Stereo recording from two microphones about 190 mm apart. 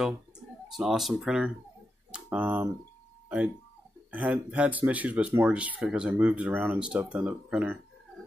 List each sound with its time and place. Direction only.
0.7 s speech: centre (ahead or behind)
4.1 s speech: 10° right (ahead or behind)